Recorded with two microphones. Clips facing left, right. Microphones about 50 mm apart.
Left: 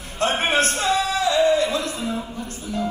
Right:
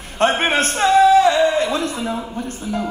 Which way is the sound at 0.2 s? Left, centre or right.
Right.